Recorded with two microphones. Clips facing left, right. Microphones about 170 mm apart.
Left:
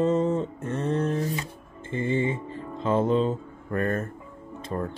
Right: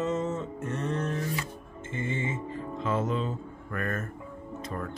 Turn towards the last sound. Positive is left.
turn(degrees=30)  # may be behind; listen again after turning